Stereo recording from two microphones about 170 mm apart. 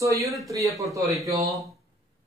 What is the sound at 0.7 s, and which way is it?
Speech, 20° right (ahead or behind).